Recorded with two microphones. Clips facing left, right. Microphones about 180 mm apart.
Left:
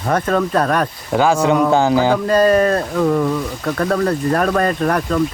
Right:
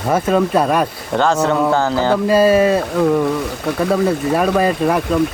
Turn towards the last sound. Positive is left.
turn(degrees=-5)  # may be behind; listen again after turning